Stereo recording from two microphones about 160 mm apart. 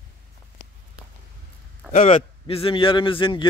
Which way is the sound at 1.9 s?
45° left (ahead or behind).